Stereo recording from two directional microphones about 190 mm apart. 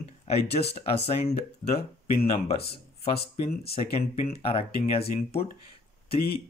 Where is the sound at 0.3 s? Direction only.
35° left (ahead or behind).